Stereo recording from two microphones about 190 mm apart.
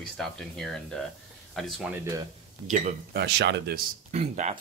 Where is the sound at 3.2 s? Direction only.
60° right (ahead or behind).